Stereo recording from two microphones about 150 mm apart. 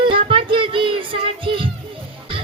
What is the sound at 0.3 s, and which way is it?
Music, 35° right (ahead or behind).